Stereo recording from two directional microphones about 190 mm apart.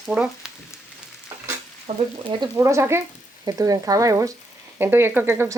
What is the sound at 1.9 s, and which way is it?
Speech, 30° right (ahead or behind).